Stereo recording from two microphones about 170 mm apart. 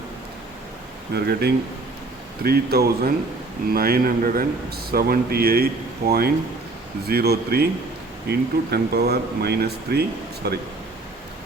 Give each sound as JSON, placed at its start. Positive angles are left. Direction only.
{"t": 1.1, "sound": "a man's voice", "side_deg": -70}